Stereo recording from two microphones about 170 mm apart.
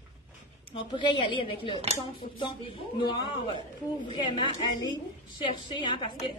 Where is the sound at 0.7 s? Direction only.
30° left (ahead or behind).